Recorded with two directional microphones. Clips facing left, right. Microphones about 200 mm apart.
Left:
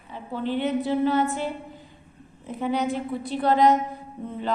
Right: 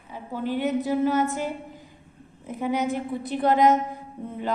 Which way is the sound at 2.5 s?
15° right (ahead or behind).